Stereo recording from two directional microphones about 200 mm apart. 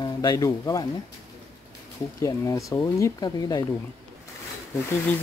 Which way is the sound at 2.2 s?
15° left (ahead or behind).